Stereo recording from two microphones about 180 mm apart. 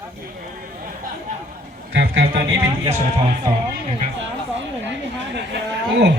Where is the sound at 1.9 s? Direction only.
65° right (ahead or behind).